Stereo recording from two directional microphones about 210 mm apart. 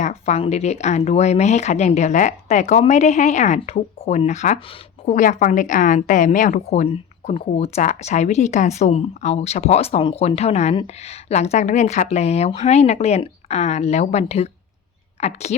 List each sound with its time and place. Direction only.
0.0 s a woman's voice: 30° left (ahead or behind)